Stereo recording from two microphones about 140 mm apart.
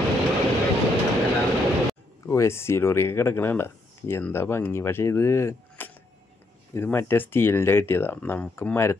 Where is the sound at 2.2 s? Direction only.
20° left (ahead or behind).